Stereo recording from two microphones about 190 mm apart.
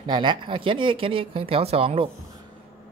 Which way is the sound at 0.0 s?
25° right (ahead or behind).